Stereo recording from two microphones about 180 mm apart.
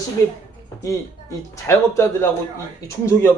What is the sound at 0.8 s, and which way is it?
Speech, 15° left (ahead or behind).